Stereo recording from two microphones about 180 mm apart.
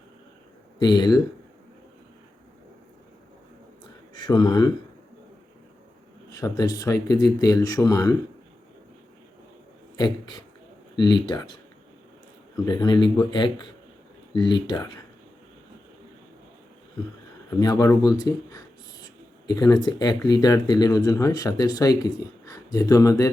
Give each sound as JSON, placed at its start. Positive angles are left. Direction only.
{"t": 0.8, "sound": "speech", "side_deg": 25}
{"t": 4.1, "sound": "speech", "side_deg": 25}
{"t": 6.3, "sound": "speech", "side_deg": 20}
{"t": 10.0, "sound": "speech", "side_deg": 25}
{"t": 12.6, "sound": "speech", "side_deg": 25}
{"t": 17.6, "sound": "speech", "side_deg": 20}